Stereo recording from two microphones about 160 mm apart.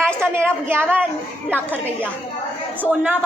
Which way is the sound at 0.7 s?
15° right (ahead or behind).